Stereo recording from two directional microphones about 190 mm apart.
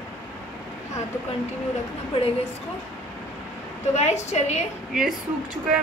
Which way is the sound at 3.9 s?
35° left (ahead or behind).